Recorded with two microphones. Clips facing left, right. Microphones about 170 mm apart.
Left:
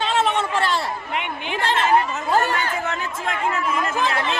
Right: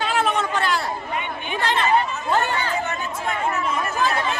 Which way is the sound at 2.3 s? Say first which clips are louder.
Left 2 dB; 40° left (ahead or behind).